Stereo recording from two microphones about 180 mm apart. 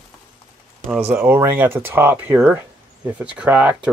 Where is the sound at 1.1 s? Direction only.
10° right (ahead or behind).